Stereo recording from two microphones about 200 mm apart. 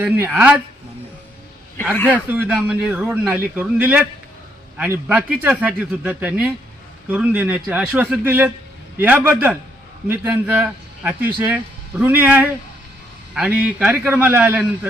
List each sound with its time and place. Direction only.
0.0 s a man's voice: 5° right (ahead or behind)
1.8 s speech: 10° left (ahead or behind)
2.3 s a man's voice: 5° right (ahead or behind)